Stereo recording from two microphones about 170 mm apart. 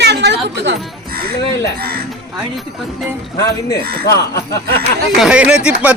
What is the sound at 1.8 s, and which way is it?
Speech, 65° right (ahead or behind).